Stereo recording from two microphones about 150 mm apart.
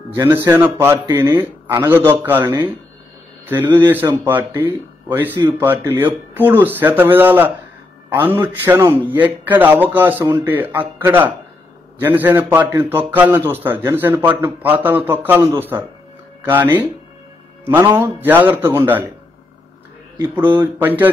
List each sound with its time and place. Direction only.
0.1 s a man's voice: 15° right (ahead or behind)
20.3 s a man's voice: 10° right (ahead or behind)